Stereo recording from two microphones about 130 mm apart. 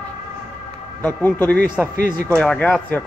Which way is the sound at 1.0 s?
15° left (ahead or behind).